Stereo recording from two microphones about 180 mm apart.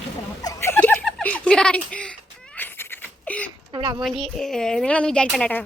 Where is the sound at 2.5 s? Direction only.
10° left (ahead or behind).